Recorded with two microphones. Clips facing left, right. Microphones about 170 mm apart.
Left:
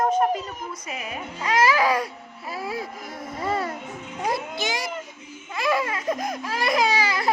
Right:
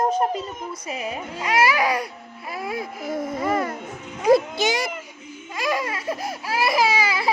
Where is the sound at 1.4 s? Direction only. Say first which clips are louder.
Even; 10° right (ahead or behind).